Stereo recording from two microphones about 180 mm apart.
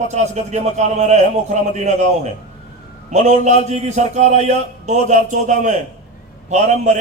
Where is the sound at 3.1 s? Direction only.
40° right (ahead or behind).